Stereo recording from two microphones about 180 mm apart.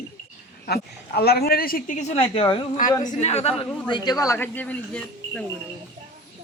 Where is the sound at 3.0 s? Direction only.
40° left (ahead or behind).